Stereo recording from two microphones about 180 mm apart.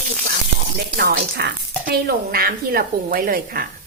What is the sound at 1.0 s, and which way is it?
Speech, 60° right (ahead or behind).